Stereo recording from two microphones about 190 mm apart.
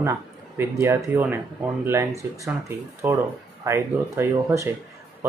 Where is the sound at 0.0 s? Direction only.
15° right (ahead or behind).